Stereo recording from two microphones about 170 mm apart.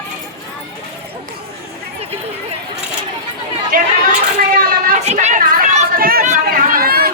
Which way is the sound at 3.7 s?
55° right (ahead or behind).